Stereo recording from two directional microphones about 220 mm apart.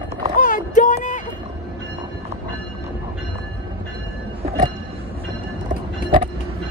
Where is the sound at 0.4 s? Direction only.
35° left (ahead or behind).